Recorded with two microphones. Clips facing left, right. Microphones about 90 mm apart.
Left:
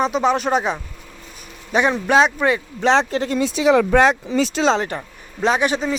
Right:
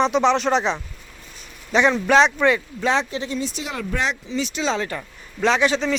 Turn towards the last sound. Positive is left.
turn(degrees=15)  # may be behind; listen again after turning